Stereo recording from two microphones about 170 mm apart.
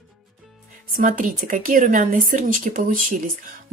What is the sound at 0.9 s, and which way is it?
Speech, 55° right (ahead or behind).